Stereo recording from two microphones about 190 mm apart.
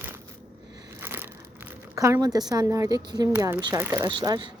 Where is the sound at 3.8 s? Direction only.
10° right (ahead or behind).